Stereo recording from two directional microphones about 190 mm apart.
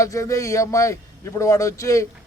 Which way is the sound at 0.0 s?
15° left (ahead or behind).